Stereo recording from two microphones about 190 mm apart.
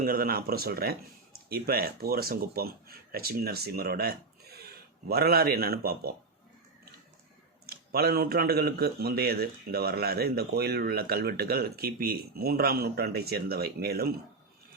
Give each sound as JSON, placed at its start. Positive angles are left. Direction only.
{"t": 0.0, "sound": "speech", "side_deg": -50}
{"t": 7.7, "sound": "speech", "side_deg": -55}